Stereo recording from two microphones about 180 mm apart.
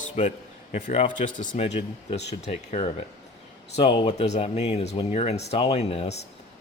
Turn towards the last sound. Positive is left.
turn(degrees=35)  # may be behind; listen again after turning